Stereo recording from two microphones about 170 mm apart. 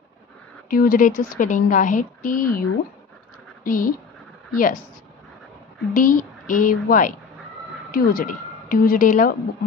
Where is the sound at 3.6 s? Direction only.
55° left (ahead or behind).